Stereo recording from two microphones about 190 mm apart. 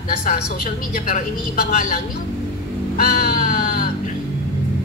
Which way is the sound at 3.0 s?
45° left (ahead or behind).